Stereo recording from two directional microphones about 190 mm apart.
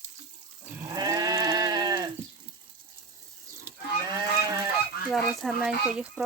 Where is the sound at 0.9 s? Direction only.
20° right (ahead or behind).